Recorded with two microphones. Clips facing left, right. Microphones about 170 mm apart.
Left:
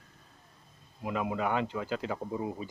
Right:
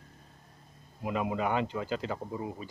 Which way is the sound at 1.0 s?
Centre (ahead or behind).